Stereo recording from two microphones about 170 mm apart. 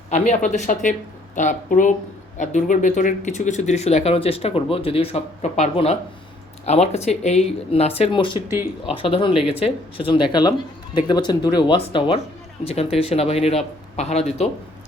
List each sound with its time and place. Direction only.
0.1 s speech: 45° left (ahead or behind)